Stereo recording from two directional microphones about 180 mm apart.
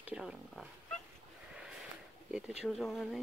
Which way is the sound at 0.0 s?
5° right (ahead or behind).